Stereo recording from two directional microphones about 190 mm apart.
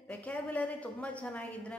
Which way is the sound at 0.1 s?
10° left (ahead or behind).